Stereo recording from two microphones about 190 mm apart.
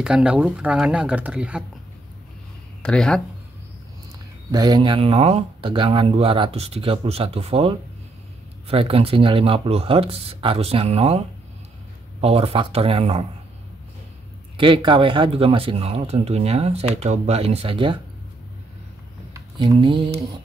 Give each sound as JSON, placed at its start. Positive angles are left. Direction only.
{"t": 0.0, "sound": "speech", "side_deg": -5}
{"t": 2.8, "sound": "speech", "side_deg": 5}
{"t": 4.5, "sound": "speech", "side_deg": -20}
{"t": 12.2, "sound": "speech", "side_deg": -30}
{"t": 14.6, "sound": "speech", "side_deg": -25}
{"t": 19.3, "sound": "speech", "side_deg": -20}